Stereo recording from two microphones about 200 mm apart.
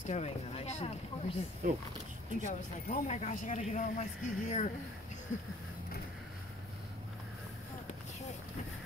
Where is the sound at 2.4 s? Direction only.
35° left (ahead or behind).